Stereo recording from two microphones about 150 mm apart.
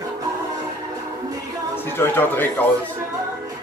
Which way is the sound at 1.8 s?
15° left (ahead or behind).